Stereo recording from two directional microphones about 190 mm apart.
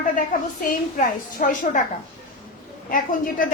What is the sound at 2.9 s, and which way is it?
Speech, 45° left (ahead or behind).